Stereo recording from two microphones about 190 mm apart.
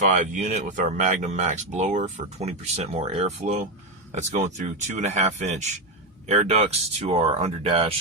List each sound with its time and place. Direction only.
0.0 s speech: 40° right (ahead or behind)